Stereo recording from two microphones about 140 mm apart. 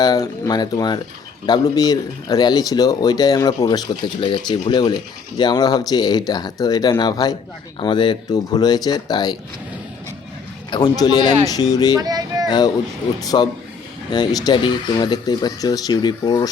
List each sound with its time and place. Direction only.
0.0 s speech: 25° left (ahead or behind)
10.7 s speech: 30° left (ahead or behind)
11.9 s speech: 25° right (ahead or behind)
12.5 s speech: 30° left (ahead or behind)